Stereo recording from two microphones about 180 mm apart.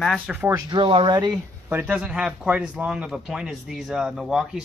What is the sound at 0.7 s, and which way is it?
Speech, 30° right (ahead or behind).